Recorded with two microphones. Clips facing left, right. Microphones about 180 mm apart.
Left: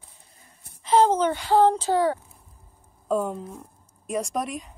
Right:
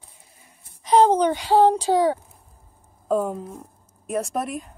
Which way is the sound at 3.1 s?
Centre (ahead or behind).